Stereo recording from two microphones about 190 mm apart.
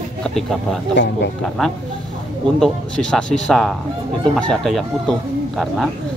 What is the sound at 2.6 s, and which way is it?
Speech, 5° left (ahead or behind).